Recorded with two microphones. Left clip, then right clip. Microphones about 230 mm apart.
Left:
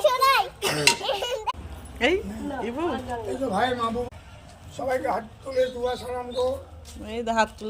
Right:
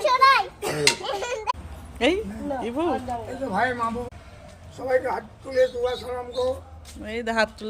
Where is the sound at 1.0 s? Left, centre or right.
Left.